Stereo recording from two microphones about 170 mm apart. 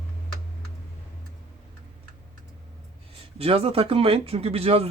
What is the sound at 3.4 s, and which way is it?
Speech, 35° right (ahead or behind).